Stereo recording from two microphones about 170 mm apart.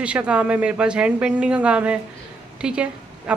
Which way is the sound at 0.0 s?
5° right (ahead or behind).